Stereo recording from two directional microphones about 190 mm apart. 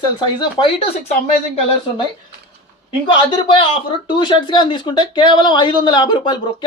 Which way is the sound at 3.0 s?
25° left (ahead or behind).